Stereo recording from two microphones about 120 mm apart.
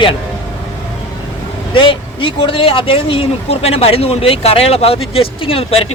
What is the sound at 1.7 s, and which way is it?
Speech, 45° left (ahead or behind).